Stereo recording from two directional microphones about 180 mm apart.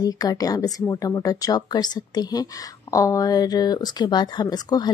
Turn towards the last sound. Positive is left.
turn(degrees=20)  # may be behind; listen again after turning